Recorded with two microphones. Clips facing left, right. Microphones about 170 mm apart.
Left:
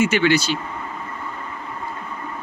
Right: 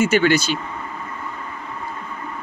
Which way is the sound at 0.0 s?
45° right (ahead or behind).